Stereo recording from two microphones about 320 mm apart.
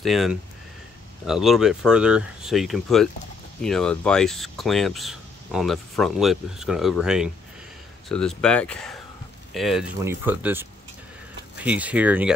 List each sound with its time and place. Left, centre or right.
0.0 s speech: centre